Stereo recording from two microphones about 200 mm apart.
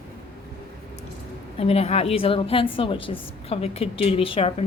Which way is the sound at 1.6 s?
30° left (ahead or behind).